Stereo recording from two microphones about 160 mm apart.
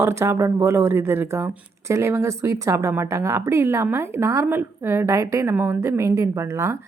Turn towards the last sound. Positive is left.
turn(degrees=-15)  # may be behind; listen again after turning